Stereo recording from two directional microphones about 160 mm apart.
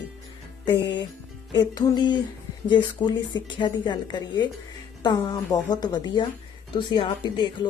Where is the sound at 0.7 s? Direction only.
90° left.